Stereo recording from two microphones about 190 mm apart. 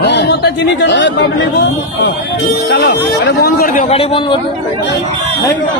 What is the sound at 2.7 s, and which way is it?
Speech, 60° left (ahead or behind).